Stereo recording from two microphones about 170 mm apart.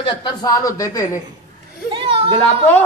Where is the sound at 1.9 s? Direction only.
30° right (ahead or behind).